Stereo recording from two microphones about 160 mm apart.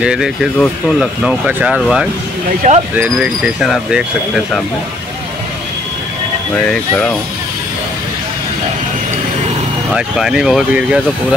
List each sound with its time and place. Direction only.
0.0 s speech: 5° right (ahead or behind)
2.6 s speech: 55° right (ahead or behind)
3.0 s speech: 5° right (ahead or behind)
6.5 s speech: 5° left (ahead or behind)
9.9 s speech: 5° right (ahead or behind)